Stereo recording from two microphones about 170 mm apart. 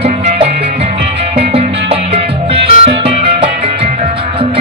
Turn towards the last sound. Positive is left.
turn(degrees=-35)  # may be behind; listen again after turning